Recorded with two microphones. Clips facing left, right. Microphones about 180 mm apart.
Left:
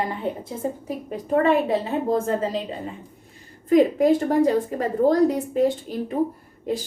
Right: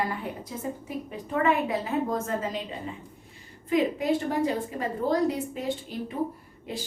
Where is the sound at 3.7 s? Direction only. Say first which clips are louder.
Left 8 dB; 45° left (ahead or behind).